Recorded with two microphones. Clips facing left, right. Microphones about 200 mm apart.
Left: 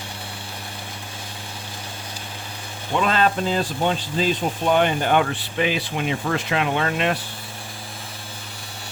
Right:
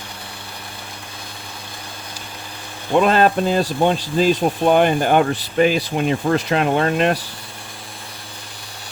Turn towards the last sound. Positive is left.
turn(degrees=-40)  # may be behind; listen again after turning